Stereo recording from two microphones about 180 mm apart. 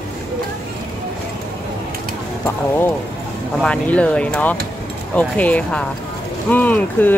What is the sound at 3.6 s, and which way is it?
Speech, 5° left (ahead or behind).